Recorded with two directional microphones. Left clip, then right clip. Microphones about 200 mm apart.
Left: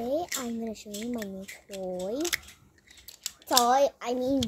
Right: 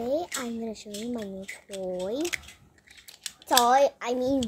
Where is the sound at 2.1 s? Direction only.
25° left (ahead or behind).